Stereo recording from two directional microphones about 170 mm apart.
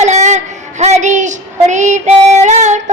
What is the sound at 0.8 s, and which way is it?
Child singing, 45° right (ahead or behind).